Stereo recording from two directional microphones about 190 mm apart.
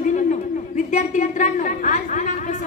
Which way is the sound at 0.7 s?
40° left (ahead or behind).